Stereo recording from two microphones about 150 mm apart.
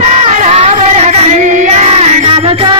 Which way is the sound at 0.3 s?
50° right (ahead or behind).